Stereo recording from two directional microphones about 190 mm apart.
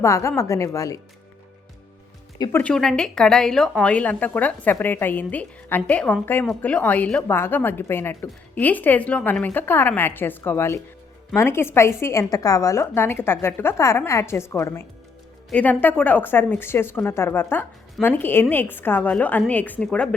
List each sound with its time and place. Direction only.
0.0 s a woman's voice: 15° left (ahead or behind)
2.4 s a woman's voice: 10° left (ahead or behind)